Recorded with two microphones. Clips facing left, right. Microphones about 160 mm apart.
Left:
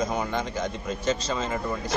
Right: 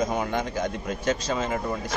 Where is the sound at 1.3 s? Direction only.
10° right (ahead or behind).